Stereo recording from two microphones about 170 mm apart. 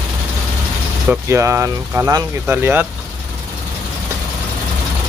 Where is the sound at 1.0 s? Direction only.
15° right (ahead or behind).